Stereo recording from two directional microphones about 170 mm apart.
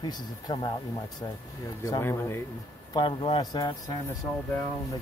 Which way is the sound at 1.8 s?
15° left (ahead or behind).